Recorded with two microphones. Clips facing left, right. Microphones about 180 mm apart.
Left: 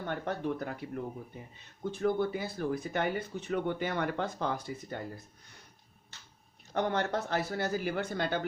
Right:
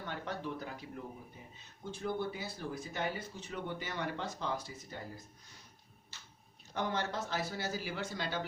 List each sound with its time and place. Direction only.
0.0 s speech: 55° left (ahead or behind)
6.7 s speech: 55° left (ahead or behind)